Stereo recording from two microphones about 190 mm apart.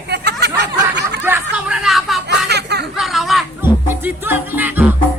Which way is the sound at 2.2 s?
60° right (ahead or behind).